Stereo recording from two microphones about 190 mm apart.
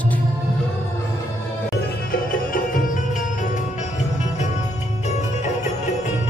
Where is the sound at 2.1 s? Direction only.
45° left (ahead or behind).